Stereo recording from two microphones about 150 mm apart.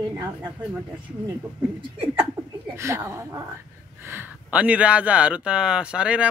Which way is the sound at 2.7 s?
20° right (ahead or behind).